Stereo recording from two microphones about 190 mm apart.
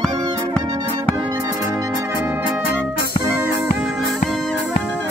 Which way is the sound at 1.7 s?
15° right (ahead or behind).